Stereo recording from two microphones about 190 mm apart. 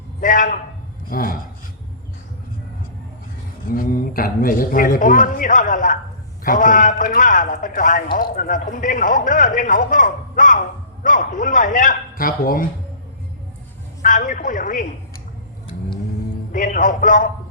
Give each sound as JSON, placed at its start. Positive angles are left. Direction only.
{"t": 0.2, "sound": "a man's voice", "side_deg": 45}
{"t": 3.7, "sound": "a man's voice", "side_deg": 45}
{"t": 14.0, "sound": "a man's voice", "side_deg": 45}
{"t": 16.5, "sound": "a man's voice", "side_deg": 45}